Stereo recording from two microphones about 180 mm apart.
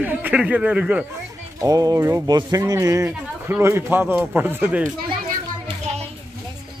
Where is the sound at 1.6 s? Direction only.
20° right (ahead or behind).